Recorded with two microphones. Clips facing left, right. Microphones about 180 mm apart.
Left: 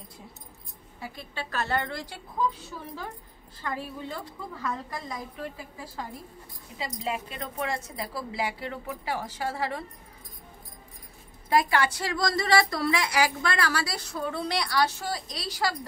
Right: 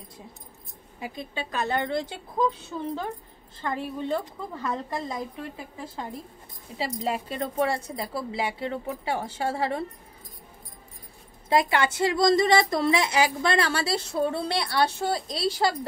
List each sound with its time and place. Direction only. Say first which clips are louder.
0.9 s a woman's voice: right 4 dB; 15° right (ahead or behind)
3.6 s a woman's voice: right 5 dB; 20° right (ahead or behind)
6.8 s a woman's voice: right 4 dB; 35° right (ahead or behind)
11.4 s a woman's voice: right 1 dB; 25° right (ahead or behind)